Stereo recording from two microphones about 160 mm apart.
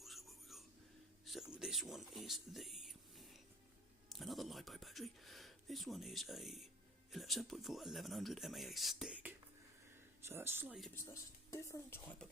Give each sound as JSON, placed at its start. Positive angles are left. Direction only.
{"t": 0.0, "sound": "whispering", "side_deg": 0}
{"t": 1.2, "sound": "a sound", "side_deg": 0}
{"t": 4.1, "sound": "speech", "side_deg": 0}
{"t": 10.2, "sound": "speech", "side_deg": -15}
{"t": 10.9, "sound": "speech", "side_deg": 20}